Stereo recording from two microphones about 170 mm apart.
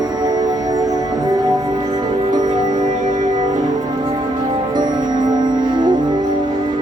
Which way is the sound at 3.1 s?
45° right (ahead or behind).